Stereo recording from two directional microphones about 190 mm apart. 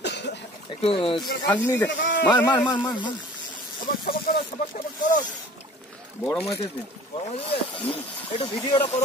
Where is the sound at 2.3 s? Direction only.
20° left (ahead or behind).